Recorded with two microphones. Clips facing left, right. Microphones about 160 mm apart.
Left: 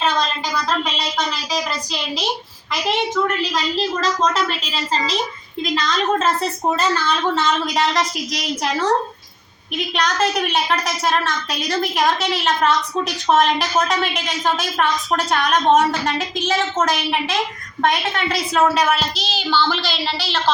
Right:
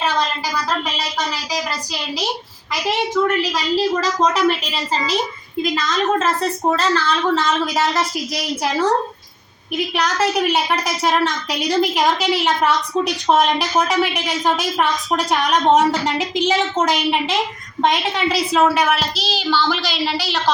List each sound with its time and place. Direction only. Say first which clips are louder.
3.5 s a woman's voice: right 3 dB; 10° right (ahead or behind)
5.6 s a woman's voice: even; 5° right (ahead or behind)
6.7 s a woman's voice: right 1 dB; 10° left (ahead or behind); by 8.9 s 5° right (ahead or behind)
9.9 s a woman's voice: even; 10° right (ahead or behind)
18.3 s a woman's voice: right 2 dB; 5° right (ahead or behind)